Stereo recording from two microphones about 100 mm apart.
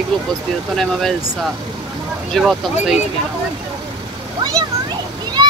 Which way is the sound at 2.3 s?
5° right (ahead or behind).